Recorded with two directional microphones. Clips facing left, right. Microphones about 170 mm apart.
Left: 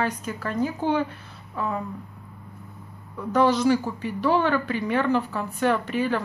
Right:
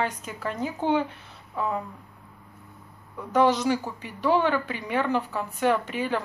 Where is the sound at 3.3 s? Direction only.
20° right (ahead or behind).